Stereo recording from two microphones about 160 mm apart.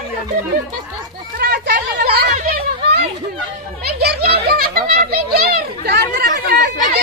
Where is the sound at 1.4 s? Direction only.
75° right (ahead or behind).